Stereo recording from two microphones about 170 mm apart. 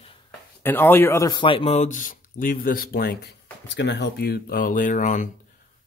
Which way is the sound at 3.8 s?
85° left.